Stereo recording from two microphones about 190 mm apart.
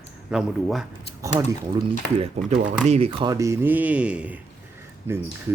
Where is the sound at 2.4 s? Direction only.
35° right (ahead or behind); by 4.3 s 5° right (ahead or behind).